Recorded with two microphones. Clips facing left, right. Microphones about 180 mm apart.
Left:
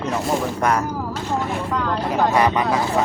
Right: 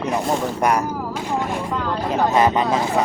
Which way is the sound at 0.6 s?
15° right (ahead or behind).